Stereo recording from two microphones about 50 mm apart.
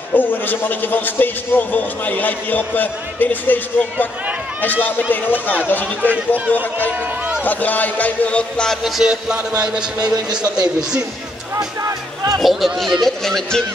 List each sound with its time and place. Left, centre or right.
0.1 s a man's voice: left
6.0 s a man's voice: right
7.4 s a man's voice: left
9.0 s a man's voice: centre
12.4 s speech: centre